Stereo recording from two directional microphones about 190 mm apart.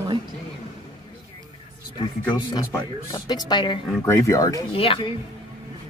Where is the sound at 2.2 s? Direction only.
20° left (ahead or behind).